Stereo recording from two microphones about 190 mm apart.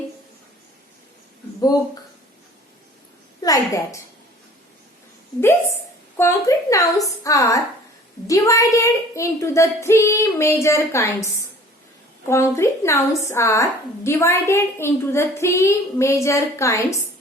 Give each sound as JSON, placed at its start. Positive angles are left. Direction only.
{"t": 3.4, "sound": "a woman's voice", "side_deg": 15}
{"t": 6.1, "sound": "a woman's voice", "side_deg": 15}
{"t": 12.3, "sound": "a woman's voice", "side_deg": 15}